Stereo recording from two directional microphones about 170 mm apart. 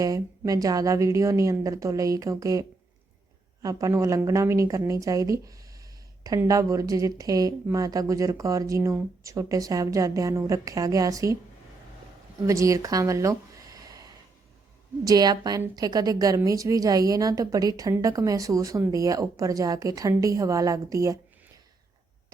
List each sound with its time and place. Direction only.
0.0 s a woman's voice: 20° right (ahead or behind)
12.5 s speech: 20° right (ahead or behind)
15.0 s a woman's voice: 20° right (ahead or behind)